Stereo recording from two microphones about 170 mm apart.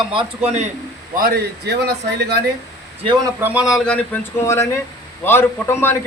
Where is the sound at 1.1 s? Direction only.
60° right (ahead or behind).